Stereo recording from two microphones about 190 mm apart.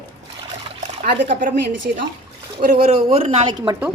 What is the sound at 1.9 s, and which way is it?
Speech, 50° right (ahead or behind).